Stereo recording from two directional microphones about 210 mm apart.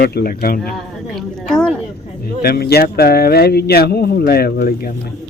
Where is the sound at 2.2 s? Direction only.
45° left (ahead or behind).